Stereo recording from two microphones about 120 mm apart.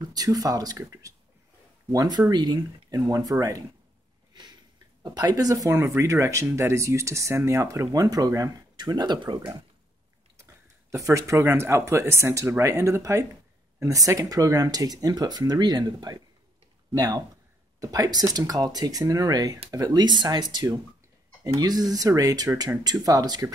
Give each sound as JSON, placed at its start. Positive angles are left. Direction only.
{"t": 0.1, "sound": "speech", "side_deg": -30}
{"t": 4.3, "sound": "a sound", "side_deg": -35}
{"t": 5.0, "sound": "speech", "side_deg": -35}
{"t": 10.9, "sound": "speech", "side_deg": -25}